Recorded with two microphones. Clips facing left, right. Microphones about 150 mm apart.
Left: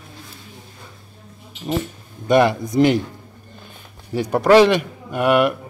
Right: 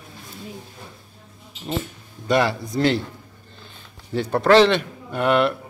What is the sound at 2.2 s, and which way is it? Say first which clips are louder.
Speech: left 5 dB; 20° left (ahead or behind).